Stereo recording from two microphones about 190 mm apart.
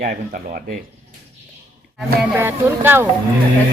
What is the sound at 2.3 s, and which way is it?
Speech, 10° right (ahead or behind).